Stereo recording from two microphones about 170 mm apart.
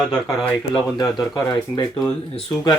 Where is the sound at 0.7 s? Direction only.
20° left (ahead or behind).